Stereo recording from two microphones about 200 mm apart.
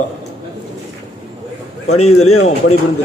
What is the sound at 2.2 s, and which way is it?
Speech, 90° left.